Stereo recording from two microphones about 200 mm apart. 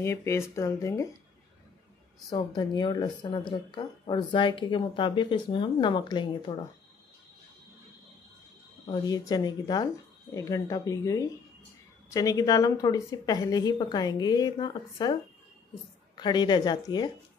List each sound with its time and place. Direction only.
0.0 s speech: 15° left (ahead or behind)
2.2 s speech: 20° left (ahead or behind)
9.0 s speech: 20° left (ahead or behind)
16.2 s speech: 20° left (ahead or behind)